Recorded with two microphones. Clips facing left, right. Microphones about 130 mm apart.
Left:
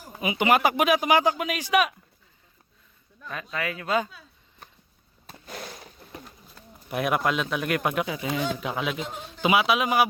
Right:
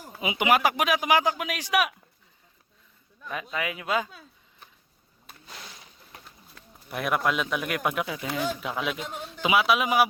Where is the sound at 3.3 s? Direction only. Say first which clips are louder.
Even; 15° right (ahead or behind).